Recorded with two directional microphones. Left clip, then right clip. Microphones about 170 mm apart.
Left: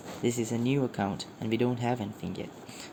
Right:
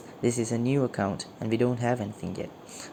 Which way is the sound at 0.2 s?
55° right (ahead or behind).